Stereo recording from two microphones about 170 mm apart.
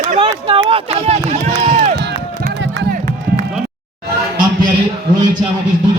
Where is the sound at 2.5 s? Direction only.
85° right.